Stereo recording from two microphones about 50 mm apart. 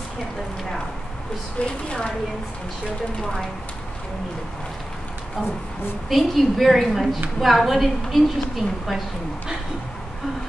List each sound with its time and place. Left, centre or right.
1.9 s speech: centre
6.0 s a woman's voice: centre